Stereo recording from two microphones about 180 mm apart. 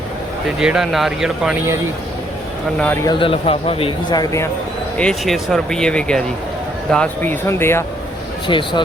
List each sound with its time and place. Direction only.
0.6 s speech: 5° right (ahead or behind)
2.7 s speech: 10° left (ahead or behind)
3.1 s speech: 30° left (ahead or behind)
4.9 s speech: 5° left (ahead or behind)
8.4 s speech: 25° left (ahead or behind)